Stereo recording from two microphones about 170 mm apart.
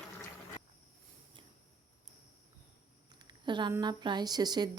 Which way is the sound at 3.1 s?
25° right (ahead or behind).